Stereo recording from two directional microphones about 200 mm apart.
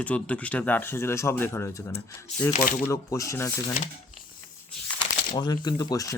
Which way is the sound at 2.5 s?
40° left (ahead or behind).